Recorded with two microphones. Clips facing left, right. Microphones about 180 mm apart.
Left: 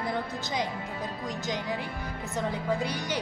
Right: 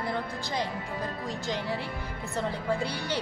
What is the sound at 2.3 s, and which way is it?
Speech, 15° left (ahead or behind).